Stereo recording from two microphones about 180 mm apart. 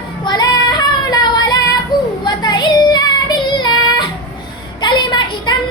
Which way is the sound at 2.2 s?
25° left (ahead or behind).